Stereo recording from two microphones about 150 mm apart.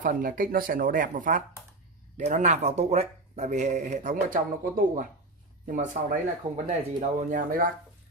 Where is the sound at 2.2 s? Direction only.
50° right (ahead or behind).